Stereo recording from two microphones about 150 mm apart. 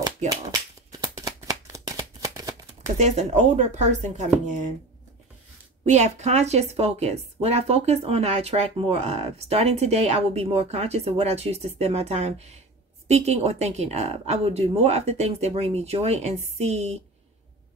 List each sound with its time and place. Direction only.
0.2 s speech: 50° right (ahead or behind)
0.9 s shuffling cards: 25° right (ahead or behind)
3.0 s speech: 50° right (ahead or behind)
5.9 s speech: 50° right (ahead or behind)